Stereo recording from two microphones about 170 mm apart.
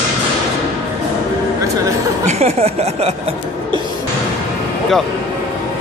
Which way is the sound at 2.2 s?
40° right (ahead or behind).